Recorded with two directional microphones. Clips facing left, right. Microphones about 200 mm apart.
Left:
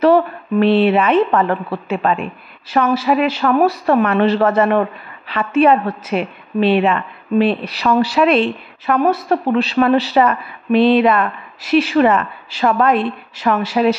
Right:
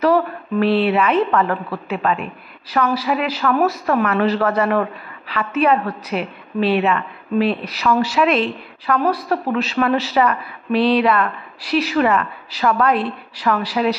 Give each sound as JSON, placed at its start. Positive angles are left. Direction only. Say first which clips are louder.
{"t": 0.0, "sound": "a woman's voice", "louder": "left 4 dB", "side_deg": 25}
{"t": 8.8, "sound": "a woman's voice", "louder": "left 3 dB", "side_deg": 25}